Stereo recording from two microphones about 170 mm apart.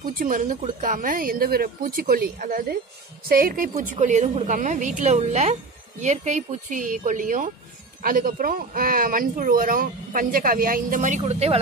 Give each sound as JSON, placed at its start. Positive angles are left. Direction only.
{"t": 0.0, "sound": "a woman's voice", "side_deg": -55}